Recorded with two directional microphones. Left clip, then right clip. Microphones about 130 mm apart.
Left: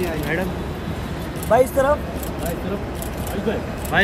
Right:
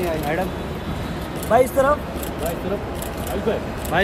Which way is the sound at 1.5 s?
50° left (ahead or behind).